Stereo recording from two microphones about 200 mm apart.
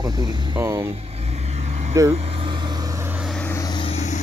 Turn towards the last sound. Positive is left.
turn(degrees=35)  # may be behind; listen again after turning